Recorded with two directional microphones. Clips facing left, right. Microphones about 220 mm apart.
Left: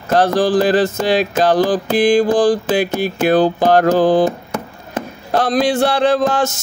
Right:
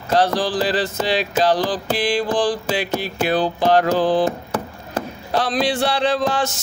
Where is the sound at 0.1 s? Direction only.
50° left (ahead or behind).